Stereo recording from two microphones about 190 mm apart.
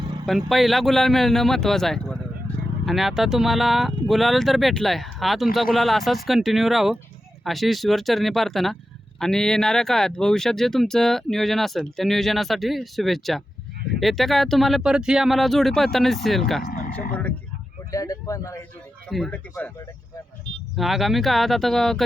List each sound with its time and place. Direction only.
0.3 s speech: centre (ahead or behind)
16.6 s speech: 50° left (ahead or behind)
17.9 s speech: 20° left (ahead or behind)
19.0 s speech: 5° left (ahead or behind)
20.7 s speech: centre (ahead or behind)